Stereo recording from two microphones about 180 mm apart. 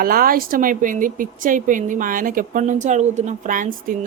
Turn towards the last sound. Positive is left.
turn(degrees=-50)  # may be behind; listen again after turning